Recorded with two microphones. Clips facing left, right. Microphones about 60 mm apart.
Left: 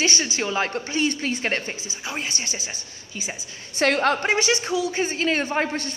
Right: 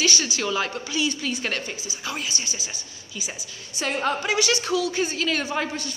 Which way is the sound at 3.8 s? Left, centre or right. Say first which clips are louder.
Left 5 dB; left.